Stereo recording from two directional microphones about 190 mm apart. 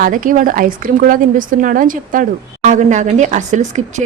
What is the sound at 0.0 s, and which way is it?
Speech, 45° right (ahead or behind).